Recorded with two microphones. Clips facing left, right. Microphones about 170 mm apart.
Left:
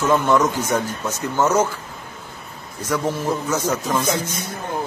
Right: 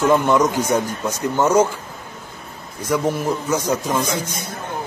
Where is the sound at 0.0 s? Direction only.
15° right (ahead or behind).